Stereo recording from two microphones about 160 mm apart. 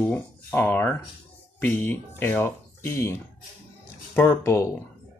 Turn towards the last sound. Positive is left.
turn(degrees=15)  # may be behind; listen again after turning